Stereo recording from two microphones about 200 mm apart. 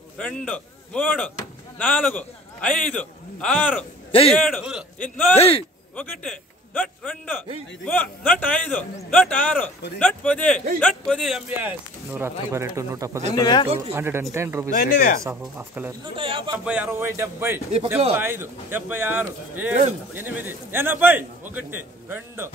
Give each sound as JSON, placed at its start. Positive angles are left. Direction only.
{"t": 0.2, "sound": "a man's voice", "side_deg": 5}
{"t": 5.4, "sound": "a man's voice", "side_deg": 30}
{"t": 5.9, "sound": "a man's voice", "side_deg": 10}
{"t": 11.5, "sound": "a man's voice", "side_deg": -10}
{"t": 13.4, "sound": "a man's voice", "side_deg": 20}
{"t": 13.9, "sound": "a man's voice", "side_deg": -10}
{"t": 14.7, "sound": "speech", "side_deg": 40}
{"t": 15.2, "sound": "a man's voice", "side_deg": -10}
{"t": 16.2, "sound": "a man's voice", "side_deg": -25}
{"t": 16.5, "sound": "a man's voice", "side_deg": -5}